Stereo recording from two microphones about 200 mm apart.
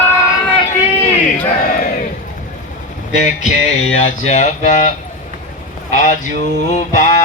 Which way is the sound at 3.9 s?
35° left (ahead or behind).